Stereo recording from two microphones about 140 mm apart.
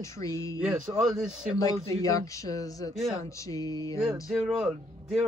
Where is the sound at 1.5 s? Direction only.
25° left (ahead or behind).